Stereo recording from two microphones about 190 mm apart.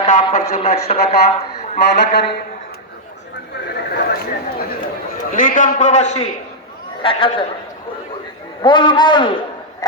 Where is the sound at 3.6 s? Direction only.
60° left (ahead or behind).